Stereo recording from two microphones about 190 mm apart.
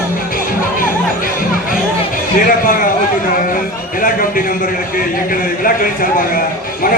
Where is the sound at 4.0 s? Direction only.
50° left (ahead or behind).